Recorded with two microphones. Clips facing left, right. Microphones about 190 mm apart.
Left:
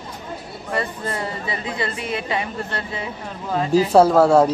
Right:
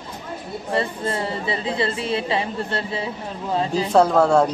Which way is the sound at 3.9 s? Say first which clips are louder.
Left 2 dB; 5° left (ahead or behind).